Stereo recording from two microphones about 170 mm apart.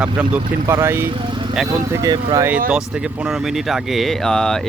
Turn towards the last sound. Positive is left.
turn(degrees=0)  # may be behind; listen again after turning